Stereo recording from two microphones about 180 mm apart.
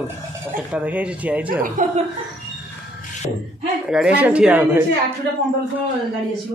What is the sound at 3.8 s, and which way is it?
Speech, 5° right (ahead or behind).